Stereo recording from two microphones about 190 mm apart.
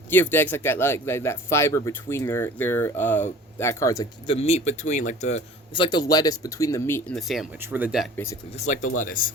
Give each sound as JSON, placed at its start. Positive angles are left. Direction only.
{"t": 0.1, "sound": "speech", "side_deg": 10}
{"t": 4.3, "sound": "speech", "side_deg": 35}
{"t": 5.7, "sound": "speech", "side_deg": 25}
{"t": 8.1, "sound": "speech", "side_deg": 15}
{"t": 8.5, "sound": "speech", "side_deg": 40}